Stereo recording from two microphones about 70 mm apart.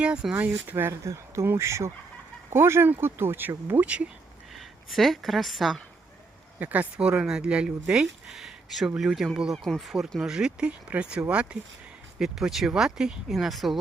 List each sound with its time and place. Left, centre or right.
0.0 s speech: centre
0.3 s speech: right
0.9 s speech: right; by 4.1 s centre
4.5 s a woman's voice: centre
6.6 s speech: right
7.2 s speech: centre
12.2 s speech: centre